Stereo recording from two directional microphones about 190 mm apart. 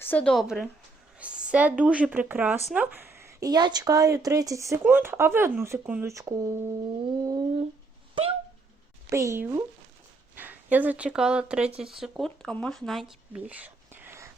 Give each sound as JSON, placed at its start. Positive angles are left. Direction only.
{"t": 0.0, "sound": "a woman's voice", "side_deg": 10}
{"t": 7.1, "sound": "a sound", "side_deg": -20}
{"t": 9.0, "sound": "a woman's voice", "side_deg": -15}